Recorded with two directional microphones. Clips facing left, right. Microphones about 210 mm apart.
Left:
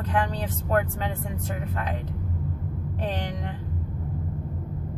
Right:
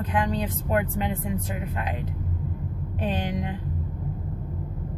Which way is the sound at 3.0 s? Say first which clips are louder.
Right 4 dB; 15° right (ahead or behind).